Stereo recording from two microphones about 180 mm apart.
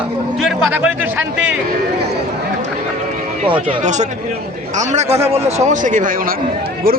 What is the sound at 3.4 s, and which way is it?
Speech, 30° right (ahead or behind).